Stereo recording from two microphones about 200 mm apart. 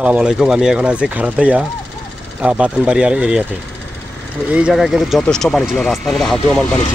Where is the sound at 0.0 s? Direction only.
5° right (ahead or behind).